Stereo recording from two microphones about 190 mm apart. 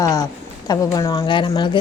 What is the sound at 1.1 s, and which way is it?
Speech, 25° left (ahead or behind).